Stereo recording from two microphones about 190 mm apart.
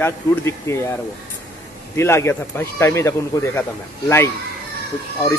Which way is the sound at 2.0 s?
15° left (ahead or behind).